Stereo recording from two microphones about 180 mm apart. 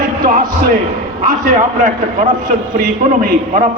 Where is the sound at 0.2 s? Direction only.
50° right (ahead or behind).